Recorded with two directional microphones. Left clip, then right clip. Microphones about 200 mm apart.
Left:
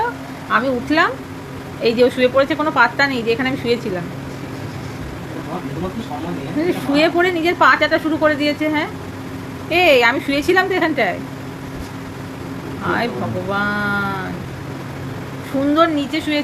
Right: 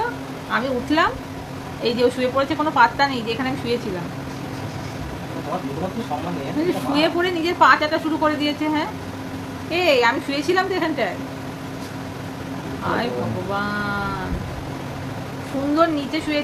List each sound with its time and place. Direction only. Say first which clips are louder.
0.5 s a woman's voice: left 4 dB; 20° left (ahead or behind)
6.6 s a woman's voice: left 4 dB; 15° left (ahead or behind)
13.5 s a woman's voice: left 6 dB; 20° left (ahead or behind)
15.7 s a woman's voice: left 3 dB; 25° left (ahead or behind)